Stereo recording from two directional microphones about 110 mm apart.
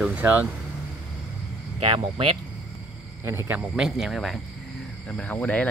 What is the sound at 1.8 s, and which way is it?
Speech, 60° right (ahead or behind).